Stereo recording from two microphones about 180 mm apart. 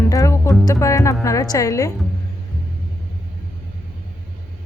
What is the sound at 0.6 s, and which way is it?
Speech, 15° left (ahead or behind).